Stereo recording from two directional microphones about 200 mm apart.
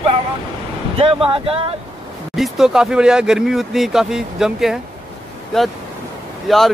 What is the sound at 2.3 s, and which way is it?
Speech, centre (ahead or behind).